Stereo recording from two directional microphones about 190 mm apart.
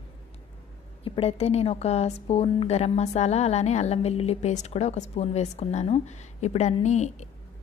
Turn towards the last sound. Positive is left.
turn(degrees=35)  # may be behind; listen again after turning